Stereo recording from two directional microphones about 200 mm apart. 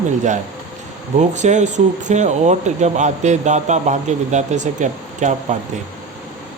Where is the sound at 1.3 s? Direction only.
35° right (ahead or behind).